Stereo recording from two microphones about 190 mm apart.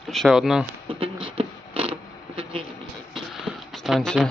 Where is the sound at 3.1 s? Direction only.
Centre (ahead or behind).